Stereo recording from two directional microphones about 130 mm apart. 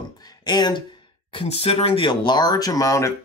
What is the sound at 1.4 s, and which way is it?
Speech, 50° left (ahead or behind).